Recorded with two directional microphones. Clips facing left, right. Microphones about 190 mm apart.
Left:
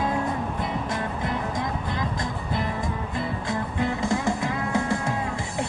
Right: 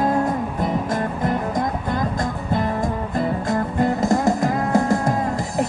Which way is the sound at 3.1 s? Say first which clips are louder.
Right 8 dB; 45° right (ahead or behind).